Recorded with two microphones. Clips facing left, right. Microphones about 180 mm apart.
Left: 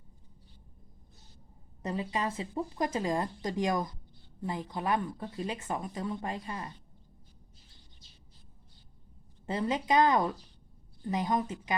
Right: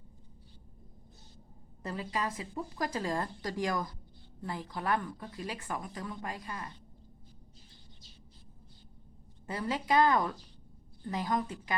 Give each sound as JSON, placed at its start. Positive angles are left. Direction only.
{"t": 1.8, "sound": "speech", "side_deg": 20}
{"t": 9.5, "sound": "speech", "side_deg": 20}